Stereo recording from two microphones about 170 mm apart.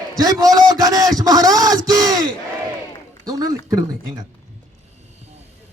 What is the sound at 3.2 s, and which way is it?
Speech, 20° right (ahead or behind).